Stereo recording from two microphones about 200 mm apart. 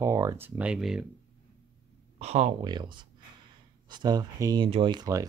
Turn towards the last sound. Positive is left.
turn(degrees=-20)  # may be behind; listen again after turning